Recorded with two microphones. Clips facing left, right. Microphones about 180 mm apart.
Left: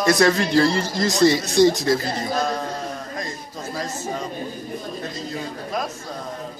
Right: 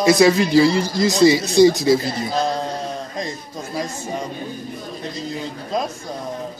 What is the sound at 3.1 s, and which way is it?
Speech, 20° right (ahead or behind).